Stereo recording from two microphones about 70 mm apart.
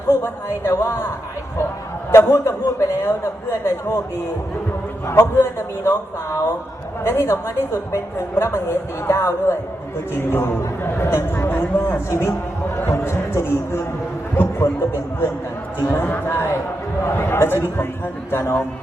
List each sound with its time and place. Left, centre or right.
0.4 s speech: left
2.1 s speech: left
5.0 s a woman's voice: left
11.9 s speech: left